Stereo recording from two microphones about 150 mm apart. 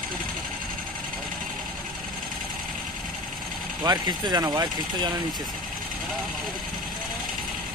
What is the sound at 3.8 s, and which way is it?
Speech, 25° right (ahead or behind).